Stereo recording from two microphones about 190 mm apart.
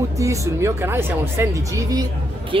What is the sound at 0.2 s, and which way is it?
Speech, 15° right (ahead or behind).